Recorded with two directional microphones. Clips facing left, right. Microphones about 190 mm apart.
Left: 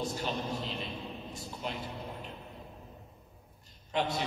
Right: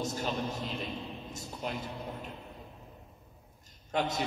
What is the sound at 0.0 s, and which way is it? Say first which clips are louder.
Speech: right 1 dB; 45° right (ahead or behind).